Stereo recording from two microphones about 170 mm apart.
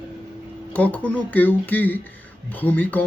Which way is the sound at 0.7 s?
10° left (ahead or behind).